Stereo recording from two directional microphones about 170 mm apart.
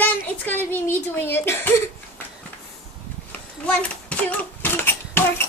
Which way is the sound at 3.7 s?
5° left (ahead or behind).